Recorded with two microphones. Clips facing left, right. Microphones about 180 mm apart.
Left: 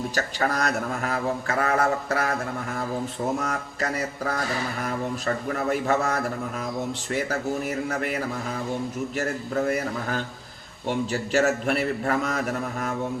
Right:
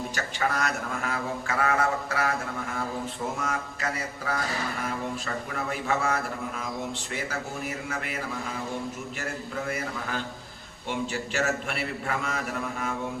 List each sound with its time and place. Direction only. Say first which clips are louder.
0.1 s a man's voice: left 3 dB; 40° left (ahead or behind)
3.4 s a man's voice: left 2 dB; 40° left (ahead or behind)
9.1 s a man's voice: left 10 dB; 40° left (ahead or behind)